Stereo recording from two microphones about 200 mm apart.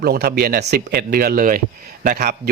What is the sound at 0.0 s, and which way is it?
A man's voice, 50° right (ahead or behind).